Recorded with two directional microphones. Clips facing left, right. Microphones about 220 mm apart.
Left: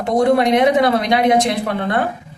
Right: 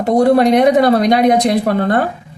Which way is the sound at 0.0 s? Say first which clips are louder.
Right 4 dB; 40° right (ahead or behind).